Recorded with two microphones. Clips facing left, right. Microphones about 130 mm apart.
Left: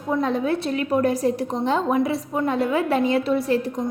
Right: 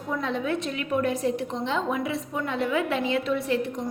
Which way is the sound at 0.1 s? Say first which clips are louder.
Left 6 dB; 40° left (ahead or behind).